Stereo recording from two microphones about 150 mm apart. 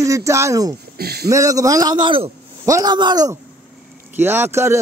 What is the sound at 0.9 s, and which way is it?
Speech, 90° right.